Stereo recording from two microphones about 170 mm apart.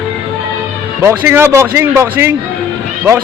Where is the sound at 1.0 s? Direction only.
15° right (ahead or behind).